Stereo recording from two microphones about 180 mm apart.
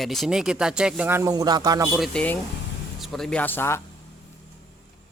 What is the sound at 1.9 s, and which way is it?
Speech, centre (ahead or behind).